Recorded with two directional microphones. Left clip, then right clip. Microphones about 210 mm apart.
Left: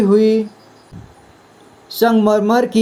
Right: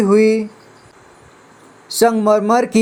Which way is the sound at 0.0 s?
25° right (ahead or behind).